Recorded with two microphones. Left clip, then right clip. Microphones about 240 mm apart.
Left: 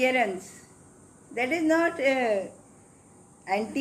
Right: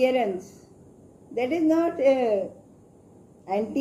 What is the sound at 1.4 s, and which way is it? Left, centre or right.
Speech, left.